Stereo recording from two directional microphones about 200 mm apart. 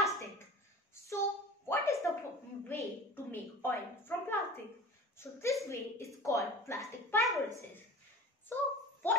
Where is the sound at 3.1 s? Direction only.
10° left (ahead or behind).